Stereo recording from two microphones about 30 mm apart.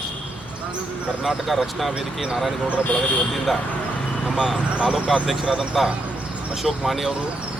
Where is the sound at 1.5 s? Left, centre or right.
Centre.